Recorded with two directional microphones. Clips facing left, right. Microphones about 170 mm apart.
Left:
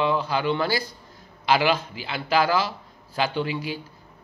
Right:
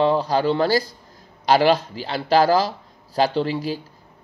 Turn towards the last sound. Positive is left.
turn(degrees=-35)  # may be behind; listen again after turning